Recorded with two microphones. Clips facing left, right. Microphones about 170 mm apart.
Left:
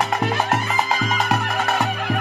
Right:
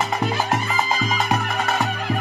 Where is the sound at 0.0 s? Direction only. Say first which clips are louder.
Left 1 dB; centre (ahead or behind).